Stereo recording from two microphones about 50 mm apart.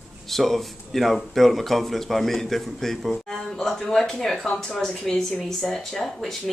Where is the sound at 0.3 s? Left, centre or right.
Centre.